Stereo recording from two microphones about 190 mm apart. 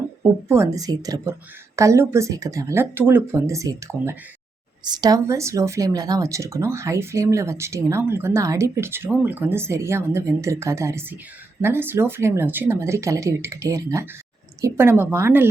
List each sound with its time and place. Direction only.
0.2 s speech: 15° right (ahead or behind)